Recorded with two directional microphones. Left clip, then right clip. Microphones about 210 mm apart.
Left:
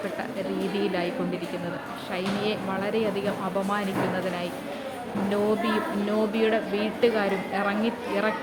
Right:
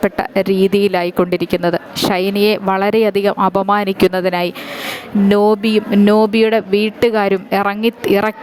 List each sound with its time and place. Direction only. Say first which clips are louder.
0.2 s speech: right 15 dB; 55° right (ahead or behind)